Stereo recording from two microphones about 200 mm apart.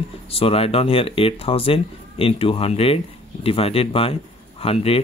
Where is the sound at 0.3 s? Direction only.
30° left (ahead or behind).